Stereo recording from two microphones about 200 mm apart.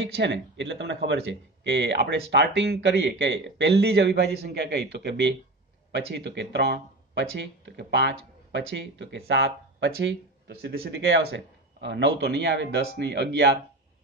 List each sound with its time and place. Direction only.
0.1 s speech: 60° right (ahead or behind)